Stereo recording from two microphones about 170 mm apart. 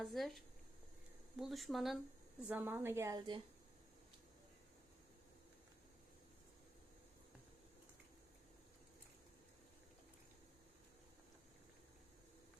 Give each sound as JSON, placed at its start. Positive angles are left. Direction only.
{"t": 0.0, "sound": "a woman's voice", "side_deg": 0}